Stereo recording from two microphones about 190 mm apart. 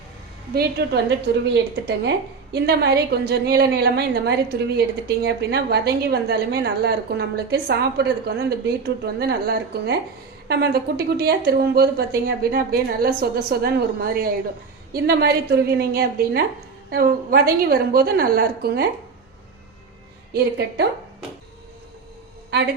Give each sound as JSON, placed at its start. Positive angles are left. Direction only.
{"t": 0.5, "sound": "a woman's voice", "side_deg": -60}
{"t": 20.3, "sound": "a woman's voice", "side_deg": -60}